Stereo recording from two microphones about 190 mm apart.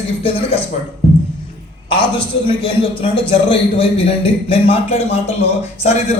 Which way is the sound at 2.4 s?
25° left (ahead or behind).